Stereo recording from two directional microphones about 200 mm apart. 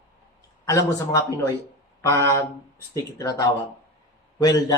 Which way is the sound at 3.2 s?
15° left (ahead or behind).